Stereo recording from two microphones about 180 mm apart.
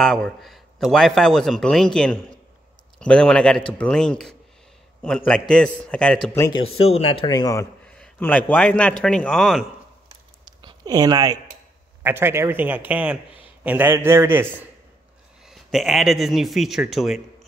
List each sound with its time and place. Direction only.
0.0 s a man's voice: centre (ahead or behind)
6.4 s speech: 30° left (ahead or behind)
7.2 s speech: 20° left (ahead or behind)
7.8 s a man's voice: 5° left (ahead or behind)
10.4 s a sound: 20° right (ahead or behind)
12.0 s speech: 10° right (ahead or behind)
15.4 s a man's voice: centre (ahead or behind)